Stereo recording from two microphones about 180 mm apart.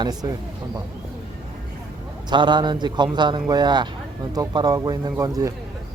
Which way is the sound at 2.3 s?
25° right (ahead or behind).